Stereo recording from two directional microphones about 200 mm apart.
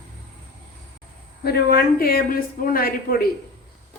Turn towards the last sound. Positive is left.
turn(degrees=45)  # may be behind; listen again after turning